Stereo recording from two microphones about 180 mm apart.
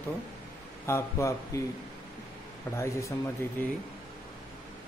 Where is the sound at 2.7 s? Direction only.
15° left (ahead or behind).